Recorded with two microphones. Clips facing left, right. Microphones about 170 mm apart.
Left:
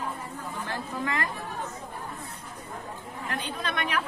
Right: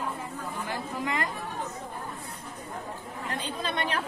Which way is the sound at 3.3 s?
25° right (ahead or behind).